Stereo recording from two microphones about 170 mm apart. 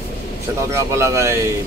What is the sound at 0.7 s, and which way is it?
Speech, 15° right (ahead or behind).